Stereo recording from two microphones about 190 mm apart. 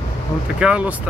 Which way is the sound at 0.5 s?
5° right (ahead or behind).